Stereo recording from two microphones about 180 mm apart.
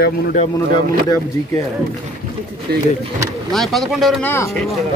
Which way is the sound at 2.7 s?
60° right (ahead or behind).